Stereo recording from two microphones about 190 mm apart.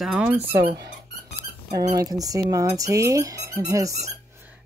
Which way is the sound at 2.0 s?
20° right (ahead or behind).